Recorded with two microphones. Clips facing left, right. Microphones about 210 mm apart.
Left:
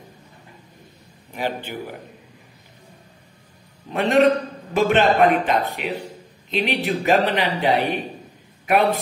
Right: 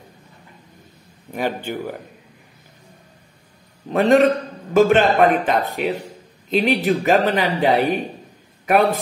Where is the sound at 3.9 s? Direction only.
40° right (ahead or behind).